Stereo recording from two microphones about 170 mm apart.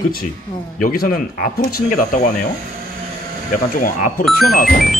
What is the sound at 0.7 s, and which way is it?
Speech, 55° left (ahead or behind).